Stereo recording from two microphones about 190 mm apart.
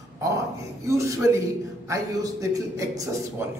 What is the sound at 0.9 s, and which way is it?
A man's voice, 15° right (ahead or behind).